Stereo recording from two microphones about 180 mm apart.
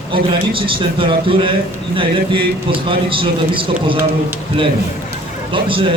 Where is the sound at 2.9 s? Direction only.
30° right (ahead or behind).